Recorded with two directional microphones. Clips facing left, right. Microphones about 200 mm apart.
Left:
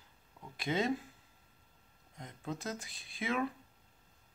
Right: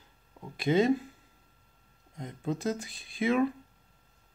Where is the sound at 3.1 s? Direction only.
5° right (ahead or behind).